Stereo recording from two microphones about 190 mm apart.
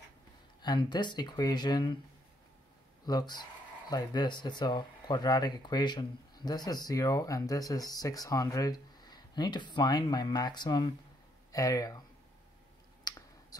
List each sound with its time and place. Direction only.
0.6 s speech: 20° left (ahead or behind)
3.1 s speech: 20° left (ahead or behind)
13.1 s a sound: 20° left (ahead or behind)
13.5 s speech: 20° left (ahead or behind)